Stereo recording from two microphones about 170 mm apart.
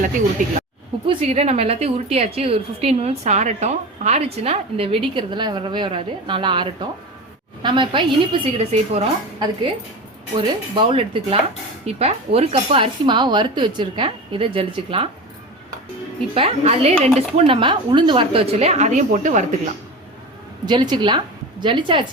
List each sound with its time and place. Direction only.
0.4 s speech: 50° right (ahead or behind)
1.0 s a woman's voice: 35° right (ahead or behind)
10.3 s a woman's voice: 30° right (ahead or behind)
16.3 s a woman's voice: 35° right (ahead or behind)
20.7 s a woman's voice: 25° right (ahead or behind)